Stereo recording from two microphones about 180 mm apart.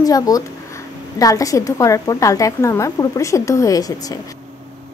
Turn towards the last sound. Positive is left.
turn(degrees=20)  # may be behind; listen again after turning